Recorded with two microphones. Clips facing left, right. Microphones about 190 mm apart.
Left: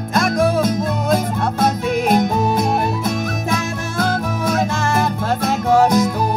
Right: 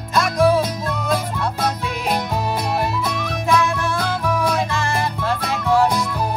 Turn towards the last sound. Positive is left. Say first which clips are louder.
# left 4 dB
turn(degrees=45)  # may be behind; listen again after turning